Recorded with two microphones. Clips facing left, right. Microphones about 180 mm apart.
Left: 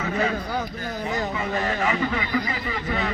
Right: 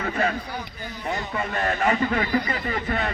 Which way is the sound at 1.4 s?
55° right (ahead or behind).